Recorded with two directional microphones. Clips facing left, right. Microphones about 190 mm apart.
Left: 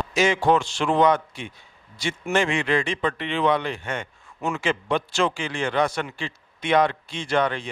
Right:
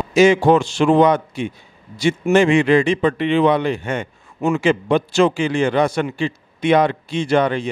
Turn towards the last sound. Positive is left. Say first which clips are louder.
# right 7 dB
turn(degrees=-10)  # may be behind; listen again after turning